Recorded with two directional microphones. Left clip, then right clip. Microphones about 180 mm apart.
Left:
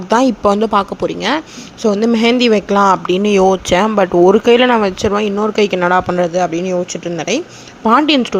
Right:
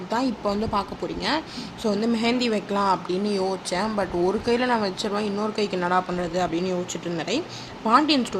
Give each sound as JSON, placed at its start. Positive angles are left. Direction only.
{"t": 0.1, "sound": "speech", "side_deg": 55}